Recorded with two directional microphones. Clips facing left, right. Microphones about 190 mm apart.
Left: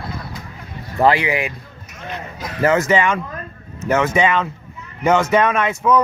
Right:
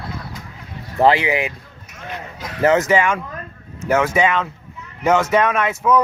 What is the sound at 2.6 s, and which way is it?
Speech, 20° right (ahead or behind).